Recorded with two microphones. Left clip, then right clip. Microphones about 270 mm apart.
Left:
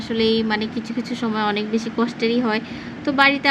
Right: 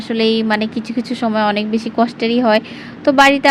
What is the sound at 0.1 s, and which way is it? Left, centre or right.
Speech, right.